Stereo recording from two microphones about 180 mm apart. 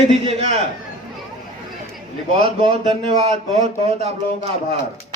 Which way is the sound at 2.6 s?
30° right (ahead or behind).